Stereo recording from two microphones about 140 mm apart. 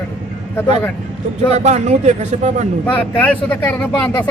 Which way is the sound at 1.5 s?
55° right (ahead or behind).